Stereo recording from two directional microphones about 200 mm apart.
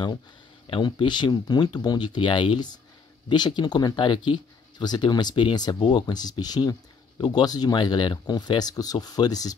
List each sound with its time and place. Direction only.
0.7 s speech: 25° left (ahead or behind)